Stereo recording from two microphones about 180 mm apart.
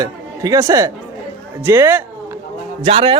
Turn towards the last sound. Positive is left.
turn(degrees=-30)  # may be behind; listen again after turning